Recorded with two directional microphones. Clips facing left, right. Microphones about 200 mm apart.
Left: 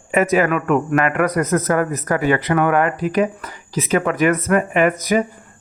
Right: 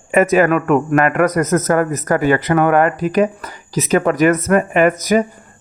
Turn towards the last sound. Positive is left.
turn(degrees=-45)  # may be behind; listen again after turning